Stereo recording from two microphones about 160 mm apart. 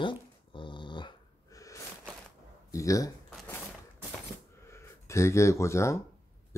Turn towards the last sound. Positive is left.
turn(degrees=15)  # may be behind; listen again after turning